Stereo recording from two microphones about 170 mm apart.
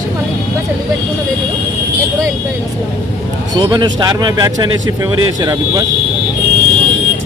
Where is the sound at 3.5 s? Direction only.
25° right (ahead or behind).